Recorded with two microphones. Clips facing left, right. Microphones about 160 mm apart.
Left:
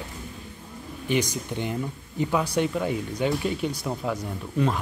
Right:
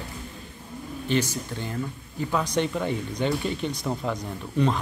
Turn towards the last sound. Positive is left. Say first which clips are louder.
# right 1 dB
turn(degrees=5)  # may be behind; listen again after turning